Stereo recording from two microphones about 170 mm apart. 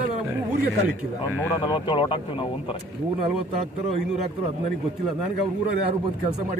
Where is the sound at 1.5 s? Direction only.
25° left (ahead or behind).